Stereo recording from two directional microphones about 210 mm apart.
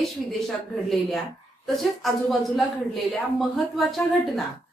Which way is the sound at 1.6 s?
Centre (ahead or behind).